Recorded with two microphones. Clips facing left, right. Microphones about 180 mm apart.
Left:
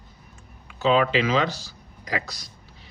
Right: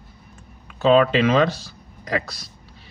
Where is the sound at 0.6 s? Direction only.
55° right (ahead or behind).